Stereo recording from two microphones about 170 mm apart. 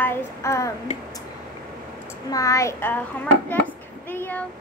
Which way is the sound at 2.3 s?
20° left (ahead or behind).